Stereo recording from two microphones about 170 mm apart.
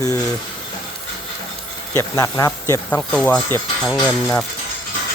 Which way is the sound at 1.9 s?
20° left (ahead or behind).